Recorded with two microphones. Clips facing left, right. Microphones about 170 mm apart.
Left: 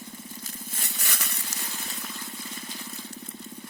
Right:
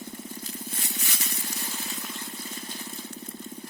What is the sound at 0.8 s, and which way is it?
Vehicle, 65° left (ahead or behind).